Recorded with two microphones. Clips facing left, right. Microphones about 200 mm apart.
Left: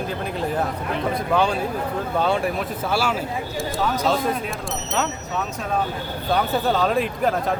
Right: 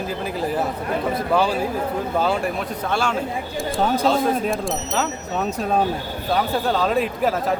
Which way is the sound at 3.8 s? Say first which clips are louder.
Right 4 dB; 30° right (ahead or behind).